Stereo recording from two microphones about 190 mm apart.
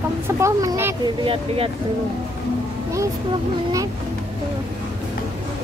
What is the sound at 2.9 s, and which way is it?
Speech, 15° right (ahead or behind).